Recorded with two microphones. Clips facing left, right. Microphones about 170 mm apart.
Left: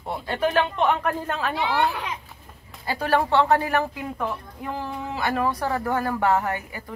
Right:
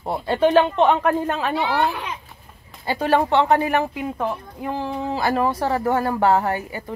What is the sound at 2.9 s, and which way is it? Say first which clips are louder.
Speech: right 3 dB; 20° right (ahead or behind).